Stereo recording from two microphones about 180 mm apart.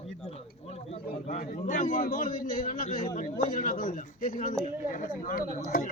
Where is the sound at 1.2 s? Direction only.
45° left (ahead or behind).